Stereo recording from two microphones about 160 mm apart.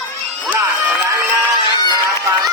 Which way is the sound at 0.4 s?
10° right (ahead or behind).